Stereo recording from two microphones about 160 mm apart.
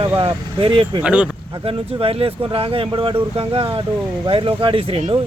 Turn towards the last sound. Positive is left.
turn(degrees=-35)  # may be behind; listen again after turning